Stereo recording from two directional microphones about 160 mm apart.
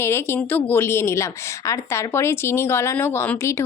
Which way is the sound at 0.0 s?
15° left (ahead or behind).